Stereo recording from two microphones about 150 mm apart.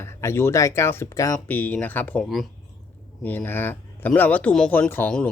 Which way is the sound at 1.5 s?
10° left (ahead or behind).